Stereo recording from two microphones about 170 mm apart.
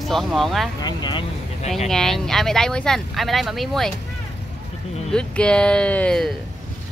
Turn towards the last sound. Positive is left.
turn(degrees=5)  # may be behind; listen again after turning